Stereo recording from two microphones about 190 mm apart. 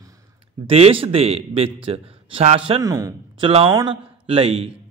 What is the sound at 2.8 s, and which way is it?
Speech, 20° right (ahead or behind).